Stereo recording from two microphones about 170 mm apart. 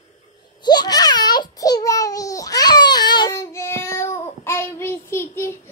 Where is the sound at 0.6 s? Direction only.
25° left (ahead or behind).